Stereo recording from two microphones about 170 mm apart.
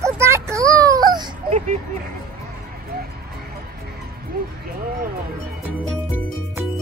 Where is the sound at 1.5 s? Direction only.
45° right (ahead or behind).